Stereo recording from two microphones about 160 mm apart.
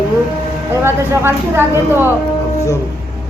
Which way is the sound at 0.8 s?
15° right (ahead or behind).